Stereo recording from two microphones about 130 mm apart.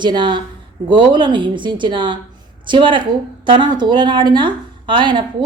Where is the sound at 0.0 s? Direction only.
35° right (ahead or behind).